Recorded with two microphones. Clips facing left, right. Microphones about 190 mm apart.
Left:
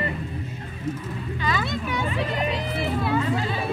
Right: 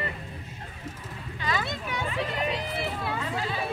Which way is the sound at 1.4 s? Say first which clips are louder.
Left 3 dB; 90° left.